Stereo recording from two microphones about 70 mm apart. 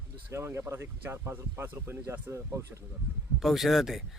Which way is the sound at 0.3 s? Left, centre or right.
Right.